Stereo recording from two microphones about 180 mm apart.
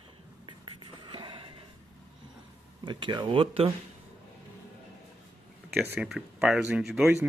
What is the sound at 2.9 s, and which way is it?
Speech, 25° right (ahead or behind).